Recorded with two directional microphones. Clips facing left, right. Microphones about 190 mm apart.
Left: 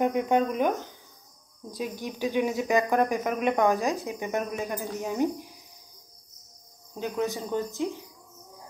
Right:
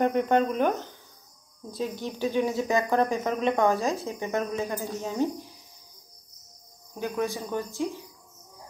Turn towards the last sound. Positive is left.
turn(degrees=20)  # may be behind; listen again after turning